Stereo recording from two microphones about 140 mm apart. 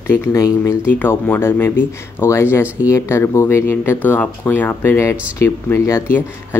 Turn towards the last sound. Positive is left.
turn(degrees=20)  # may be behind; listen again after turning